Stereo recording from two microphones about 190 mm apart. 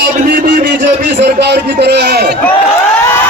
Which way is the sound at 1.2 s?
60° right (ahead or behind).